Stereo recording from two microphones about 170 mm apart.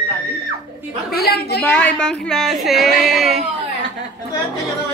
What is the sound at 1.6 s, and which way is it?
A woman's voice, 10° left (ahead or behind).